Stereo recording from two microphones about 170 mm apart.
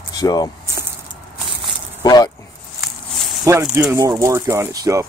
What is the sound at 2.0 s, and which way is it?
Speech, 25° left (ahead or behind).